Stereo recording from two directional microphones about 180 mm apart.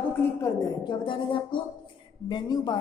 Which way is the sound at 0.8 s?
25° left (ahead or behind).